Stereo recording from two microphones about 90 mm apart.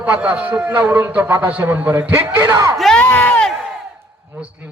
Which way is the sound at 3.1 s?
20° left (ahead or behind).